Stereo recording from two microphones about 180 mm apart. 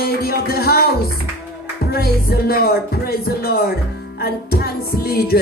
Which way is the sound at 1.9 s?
60° left (ahead or behind).